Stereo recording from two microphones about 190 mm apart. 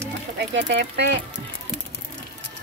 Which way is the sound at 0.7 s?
65° right (ahead or behind).